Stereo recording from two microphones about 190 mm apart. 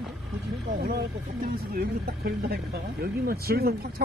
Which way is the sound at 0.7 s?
55° right (ahead or behind).